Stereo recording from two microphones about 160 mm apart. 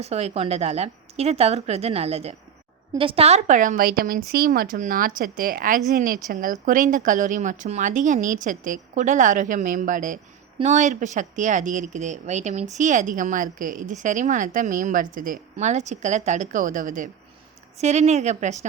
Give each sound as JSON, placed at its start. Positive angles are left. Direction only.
{"t": 0.0, "sound": "a woman's voice", "side_deg": -40}
{"t": 17.7, "sound": "a woman's voice", "side_deg": -45}